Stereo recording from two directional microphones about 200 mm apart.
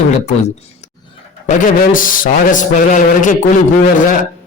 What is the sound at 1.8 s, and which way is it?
A man's voice, 45° left (ahead or behind).